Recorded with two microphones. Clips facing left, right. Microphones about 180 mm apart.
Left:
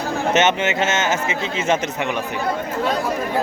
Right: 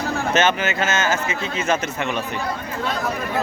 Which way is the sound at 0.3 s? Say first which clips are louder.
Left 2 dB; 20° left (ahead or behind).